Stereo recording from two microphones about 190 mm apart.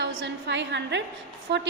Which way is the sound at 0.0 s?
65° right (ahead or behind).